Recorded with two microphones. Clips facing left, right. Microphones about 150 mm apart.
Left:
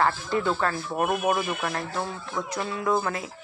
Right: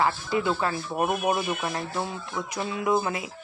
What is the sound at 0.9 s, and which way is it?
Speech, centre (ahead or behind).